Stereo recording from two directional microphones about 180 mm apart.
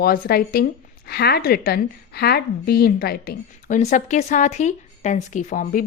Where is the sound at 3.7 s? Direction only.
40° left (ahead or behind).